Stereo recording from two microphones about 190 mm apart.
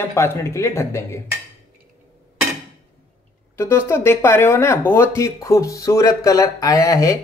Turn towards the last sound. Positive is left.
turn(degrees=15)  # may be behind; listen again after turning